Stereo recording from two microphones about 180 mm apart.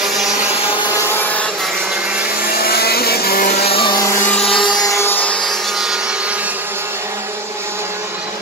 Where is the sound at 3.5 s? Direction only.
35° left (ahead or behind); by 4.4 s 10° left (ahead or behind).